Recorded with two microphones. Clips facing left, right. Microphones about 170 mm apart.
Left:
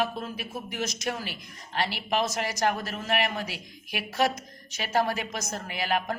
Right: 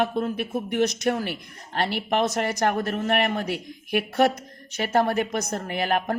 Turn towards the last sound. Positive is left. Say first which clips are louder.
# right 4 dB
turn(degrees=-50)  # may be behind; listen again after turning